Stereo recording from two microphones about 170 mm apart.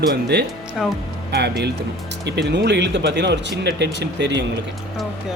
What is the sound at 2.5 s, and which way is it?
Speech, 90° right.